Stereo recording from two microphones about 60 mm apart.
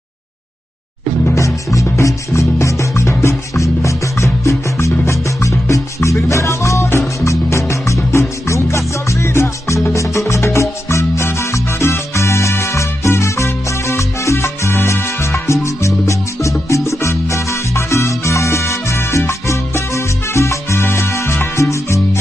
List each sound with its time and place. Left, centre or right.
1.3 s music: left
16.6 s salsa music: left